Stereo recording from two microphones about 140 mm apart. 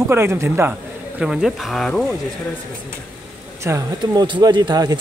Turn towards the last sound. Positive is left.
turn(degrees=-25)  # may be behind; listen again after turning